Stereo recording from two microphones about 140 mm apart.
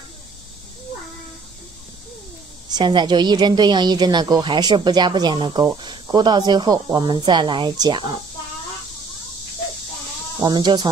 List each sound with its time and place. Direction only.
2.7 s a woman's voice: 30° right (ahead or behind)
10.4 s a woman's voice: 30° right (ahead or behind)